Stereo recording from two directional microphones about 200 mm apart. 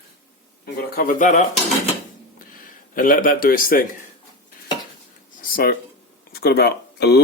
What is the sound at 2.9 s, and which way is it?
Speech, 45° left (ahead or behind).